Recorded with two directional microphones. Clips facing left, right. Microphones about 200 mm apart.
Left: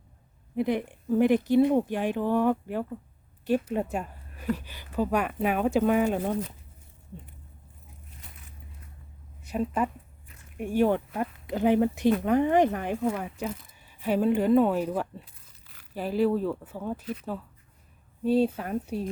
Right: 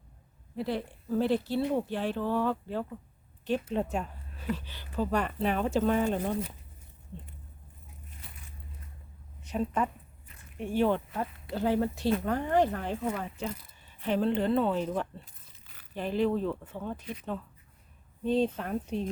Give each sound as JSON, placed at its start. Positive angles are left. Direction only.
{"t": 0.5, "sound": "speech", "side_deg": 15}
{"t": 9.4, "sound": "a woman's voice", "side_deg": 10}